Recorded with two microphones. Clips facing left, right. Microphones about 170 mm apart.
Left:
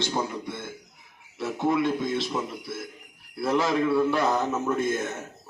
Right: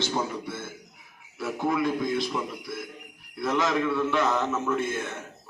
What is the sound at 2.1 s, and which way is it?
A man's voice, 25° left (ahead or behind).